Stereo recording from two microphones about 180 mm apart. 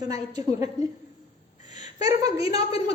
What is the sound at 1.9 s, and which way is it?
Speech, 20° right (ahead or behind).